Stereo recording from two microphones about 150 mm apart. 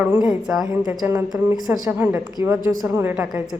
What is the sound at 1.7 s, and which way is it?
Speech, 10° right (ahead or behind).